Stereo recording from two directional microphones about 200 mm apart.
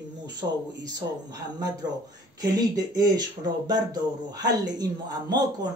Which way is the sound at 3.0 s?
20° right (ahead or behind).